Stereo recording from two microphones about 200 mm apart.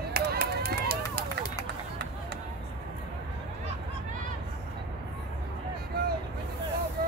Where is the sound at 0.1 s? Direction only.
50° right (ahead or behind).